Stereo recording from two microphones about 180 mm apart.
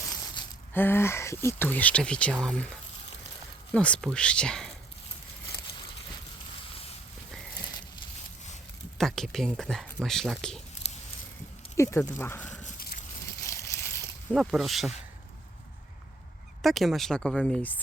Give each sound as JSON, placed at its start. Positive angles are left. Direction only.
{"t": 0.7, "sound": "speech", "side_deg": 10}
{"t": 9.0, "sound": "speech", "side_deg": 0}
{"t": 11.8, "sound": "speech", "side_deg": 15}
{"t": 12.6, "sound": "a sound", "side_deg": 55}
{"t": 13.4, "sound": "a sound", "side_deg": 15}
{"t": 14.3, "sound": "speech", "side_deg": 0}
{"t": 16.6, "sound": "speech", "side_deg": 0}